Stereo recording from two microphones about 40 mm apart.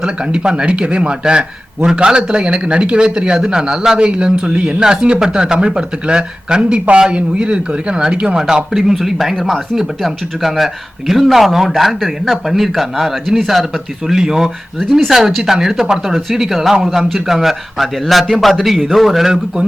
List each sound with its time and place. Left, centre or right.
0.0 s speech: right
8.7 s speech: centre